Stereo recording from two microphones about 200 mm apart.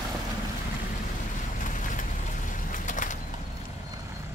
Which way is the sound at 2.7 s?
40° left (ahead or behind).